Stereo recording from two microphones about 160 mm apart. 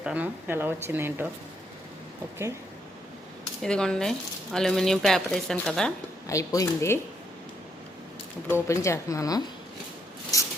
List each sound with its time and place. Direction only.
0.0 s speech: 10° right (ahead or behind)
3.6 s speech: 5° left (ahead or behind)
6.2 s speech: 20° left (ahead or behind)
8.4 s speech: 15° left (ahead or behind)
10.3 s a sound: 20° left (ahead or behind)